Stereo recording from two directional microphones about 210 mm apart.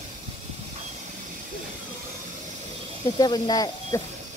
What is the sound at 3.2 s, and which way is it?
Speech, 20° left (ahead or behind).